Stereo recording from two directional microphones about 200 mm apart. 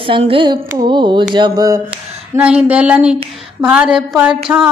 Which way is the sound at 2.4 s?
5° right (ahead or behind).